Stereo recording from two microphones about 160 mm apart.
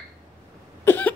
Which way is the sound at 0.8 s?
10° left (ahead or behind).